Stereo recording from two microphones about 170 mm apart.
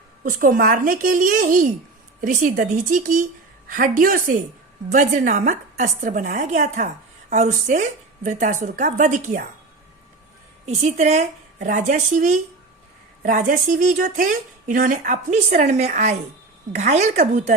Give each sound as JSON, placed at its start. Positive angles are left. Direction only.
{"t": 0.3, "sound": "a woman's voice", "side_deg": -55}
{"t": 10.7, "sound": "a woman's voice", "side_deg": -40}